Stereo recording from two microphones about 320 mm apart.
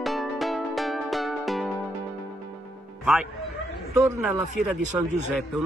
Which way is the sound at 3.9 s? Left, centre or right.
Centre.